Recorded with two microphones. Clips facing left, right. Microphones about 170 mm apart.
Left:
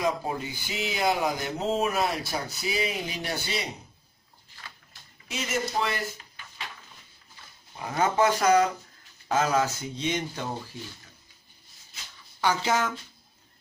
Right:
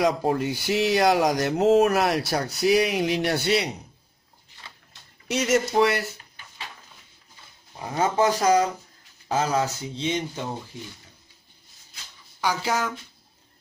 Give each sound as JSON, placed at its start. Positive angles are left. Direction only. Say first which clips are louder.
{"t": 0.0, "sound": "speech", "louder": "right 6 dB", "side_deg": -75}
{"t": 5.3, "sound": "speech", "louder": "right 8 dB", "side_deg": -80}
{"t": 7.9, "sound": "speech", "louder": "right 2 dB", "side_deg": -25}
{"t": 12.4, "sound": "speech", "louder": "even", "side_deg": -10}